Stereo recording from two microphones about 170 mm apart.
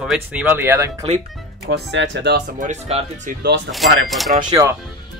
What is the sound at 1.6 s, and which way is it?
Speech, 90° right.